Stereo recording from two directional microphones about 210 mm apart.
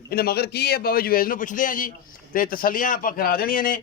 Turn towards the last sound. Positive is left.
turn(degrees=45)  # may be behind; listen again after turning